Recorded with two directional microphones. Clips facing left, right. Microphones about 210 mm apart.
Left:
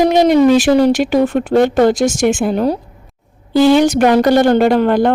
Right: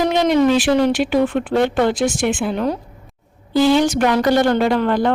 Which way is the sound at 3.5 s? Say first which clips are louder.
Left 4 dB; 70° left (ahead or behind).